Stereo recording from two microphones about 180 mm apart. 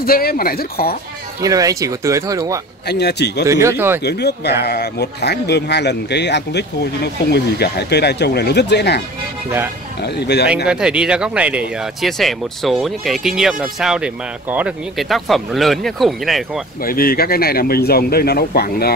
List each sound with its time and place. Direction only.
0.0 s speech: 55° left (ahead or behind)
1.4 s speech: 20° right (ahead or behind)
2.9 s speech: 65° left (ahead or behind)
3.4 s speech: 15° right (ahead or behind)
4.0 s speech: 65° left (ahead or behind)
10.0 s speech: 65° left (ahead or behind)
10.7 s speech: 5° right (ahead or behind)
16.8 s speech: 55° left (ahead or behind)